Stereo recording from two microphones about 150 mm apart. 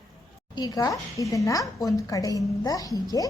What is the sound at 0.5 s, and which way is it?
A woman's voice, 25° left (ahead or behind).